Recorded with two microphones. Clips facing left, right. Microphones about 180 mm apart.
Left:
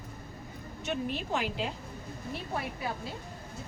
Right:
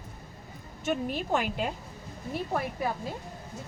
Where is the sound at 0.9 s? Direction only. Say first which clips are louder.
Right 4 dB; 45° right (ahead or behind).